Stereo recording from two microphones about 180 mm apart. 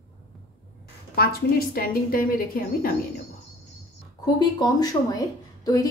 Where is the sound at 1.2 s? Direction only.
55° left (ahead or behind).